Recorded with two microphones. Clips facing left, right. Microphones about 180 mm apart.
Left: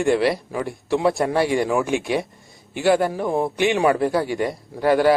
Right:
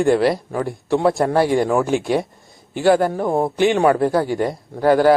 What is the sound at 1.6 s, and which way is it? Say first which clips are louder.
Speech: right 3 dB; 35° right (ahead or behind).